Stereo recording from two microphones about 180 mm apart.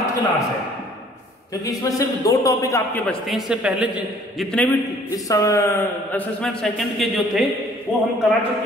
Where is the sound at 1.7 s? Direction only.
20° left (ahead or behind).